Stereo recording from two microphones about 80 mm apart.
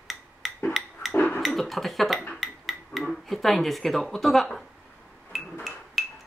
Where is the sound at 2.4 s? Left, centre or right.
Centre.